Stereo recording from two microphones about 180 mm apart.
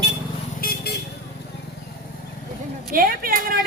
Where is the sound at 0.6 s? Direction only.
60° left (ahead or behind).